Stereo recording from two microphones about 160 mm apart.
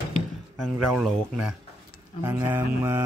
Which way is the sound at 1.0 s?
5° right (ahead or behind).